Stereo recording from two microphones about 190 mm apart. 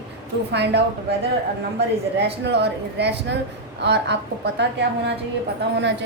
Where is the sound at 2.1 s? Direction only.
60° right (ahead or behind).